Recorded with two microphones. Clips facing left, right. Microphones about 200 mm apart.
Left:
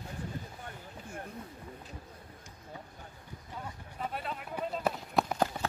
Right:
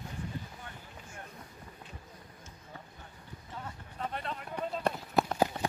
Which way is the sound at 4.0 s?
5° left (ahead or behind).